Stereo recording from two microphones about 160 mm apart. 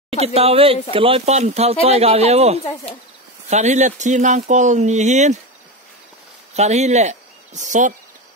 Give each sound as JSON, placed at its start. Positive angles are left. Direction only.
{"t": 0.2, "sound": "speech", "side_deg": -40}
{"t": 6.5, "sound": "speech", "side_deg": -45}